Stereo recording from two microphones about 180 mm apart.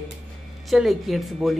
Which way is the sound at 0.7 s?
Centre (ahead or behind).